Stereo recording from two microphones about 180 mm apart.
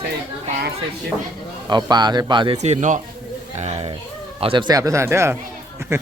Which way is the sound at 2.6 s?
40° right (ahead or behind).